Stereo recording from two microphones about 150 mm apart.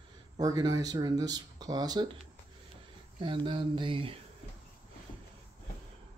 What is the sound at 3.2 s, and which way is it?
Speech, 30° right (ahead or behind).